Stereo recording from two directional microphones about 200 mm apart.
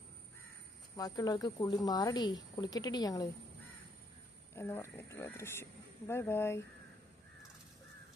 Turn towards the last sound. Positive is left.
turn(degrees=10)  # may be behind; listen again after turning